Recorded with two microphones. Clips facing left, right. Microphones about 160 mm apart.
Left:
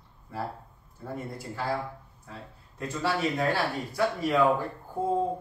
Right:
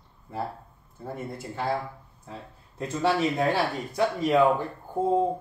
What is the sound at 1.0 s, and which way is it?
Speech, 25° right (ahead or behind).